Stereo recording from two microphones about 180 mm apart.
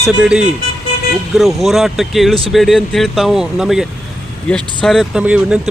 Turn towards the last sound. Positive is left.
turn(degrees=-5)  # may be behind; listen again after turning